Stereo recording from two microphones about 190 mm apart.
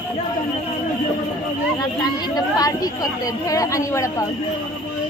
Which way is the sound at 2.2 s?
20° left (ahead or behind).